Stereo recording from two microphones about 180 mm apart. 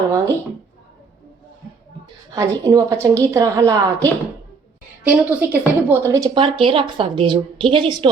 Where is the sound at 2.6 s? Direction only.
15° right (ahead or behind).